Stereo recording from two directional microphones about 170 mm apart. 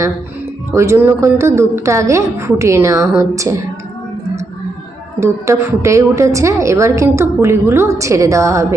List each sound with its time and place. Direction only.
0.7 s a woman's voice: 15° right (ahead or behind)
5.2 s a woman's voice: 15° right (ahead or behind)